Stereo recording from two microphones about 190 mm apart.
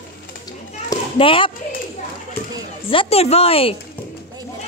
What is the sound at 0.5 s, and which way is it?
Children playing, 25° left (ahead or behind).